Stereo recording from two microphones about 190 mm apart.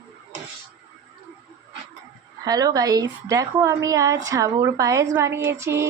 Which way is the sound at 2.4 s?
20° right (ahead or behind).